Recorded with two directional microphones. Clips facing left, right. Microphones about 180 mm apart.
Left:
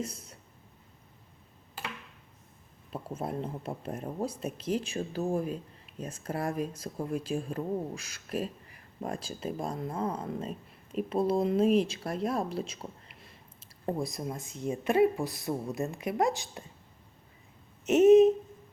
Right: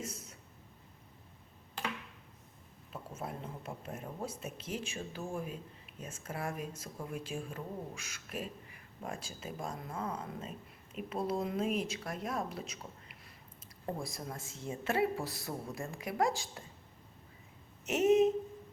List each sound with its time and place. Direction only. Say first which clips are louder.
0.0 s a sound: left 6 dB; 35° left (ahead or behind)
2.9 s speech: left 7 dB; 35° left (ahead or behind)
17.8 s speech: left 8 dB; 20° left (ahead or behind)